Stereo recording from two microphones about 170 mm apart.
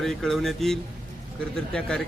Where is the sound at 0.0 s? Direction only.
Centre (ahead or behind).